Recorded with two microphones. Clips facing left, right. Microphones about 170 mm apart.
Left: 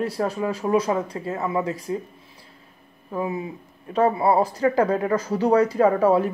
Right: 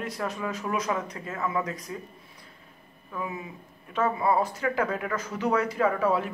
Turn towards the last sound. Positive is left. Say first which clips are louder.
# left 7 dB
turn(degrees=35)  # may be behind; listen again after turning